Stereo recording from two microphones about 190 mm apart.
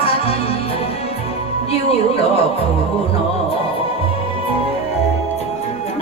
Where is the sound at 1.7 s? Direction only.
30° left (ahead or behind).